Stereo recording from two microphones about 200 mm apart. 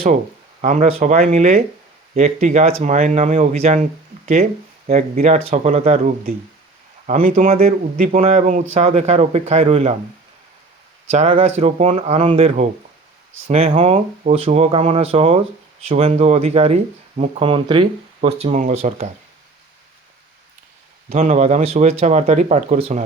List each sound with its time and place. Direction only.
0.6 s speech: 35° right (ahead or behind)
4.9 s speech: 40° right (ahead or behind)
7.3 s speech: 35° right (ahead or behind)
11.1 s speech: 30° right (ahead or behind)
21.1 s speech: 35° right (ahead or behind)